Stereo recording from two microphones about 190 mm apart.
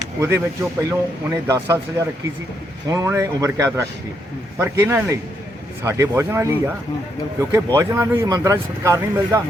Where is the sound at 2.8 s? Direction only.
15° right (ahead or behind).